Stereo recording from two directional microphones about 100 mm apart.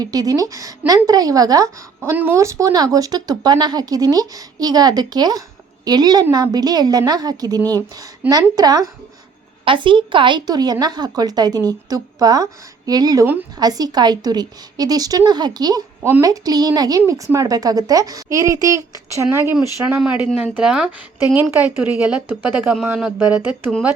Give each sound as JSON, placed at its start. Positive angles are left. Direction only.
{"t": 0.0, "sound": "speech", "side_deg": -40}
{"t": 2.0, "sound": "speech", "side_deg": -15}
{"t": 2.3, "sound": "speech", "side_deg": -30}
{"t": 9.6, "sound": "a woman's voice", "side_deg": -55}